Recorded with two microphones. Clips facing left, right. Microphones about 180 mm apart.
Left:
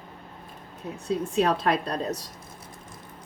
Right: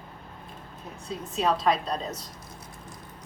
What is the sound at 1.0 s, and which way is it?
A woman's voice, 60° left (ahead or behind).